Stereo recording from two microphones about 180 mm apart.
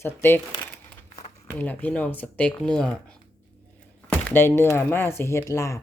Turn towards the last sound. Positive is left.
turn(degrees=15)  # may be behind; listen again after turning